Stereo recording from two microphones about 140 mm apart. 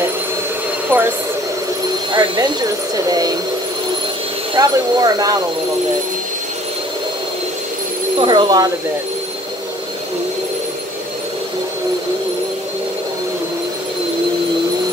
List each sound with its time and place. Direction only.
0.9 s train: 15° right (ahead or behind)
3.1 s speech: 25° right (ahead or behind)
4.6 s speech: 25° right (ahead or behind)
8.2 s speech: 35° right (ahead or behind)